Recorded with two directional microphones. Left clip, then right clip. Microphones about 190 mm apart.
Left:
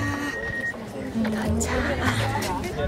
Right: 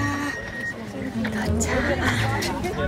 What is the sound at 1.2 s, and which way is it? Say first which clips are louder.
Music: even; 25° left (ahead or behind).